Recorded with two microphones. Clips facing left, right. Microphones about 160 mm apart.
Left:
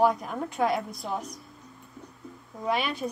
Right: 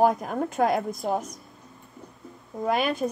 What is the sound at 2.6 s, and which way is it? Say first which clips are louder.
Speech: right 4 dB; 45° right (ahead or behind).